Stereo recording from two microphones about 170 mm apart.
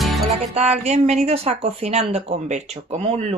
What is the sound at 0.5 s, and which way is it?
Speech, 40° right (ahead or behind).